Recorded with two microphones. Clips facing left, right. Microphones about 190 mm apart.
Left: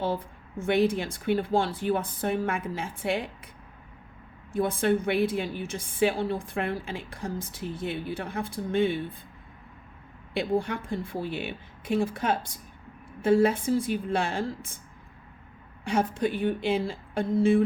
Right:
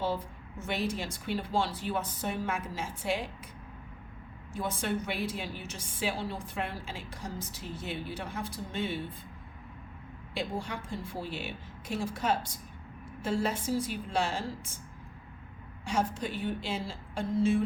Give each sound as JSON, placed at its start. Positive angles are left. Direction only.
{"t": 0.6, "sound": "a woman's voice", "side_deg": 55}
{"t": 4.5, "sound": "a woman's voice", "side_deg": 55}
{"t": 10.3, "sound": "a woman's voice", "side_deg": 60}
{"t": 15.8, "sound": "a woman's voice", "side_deg": 60}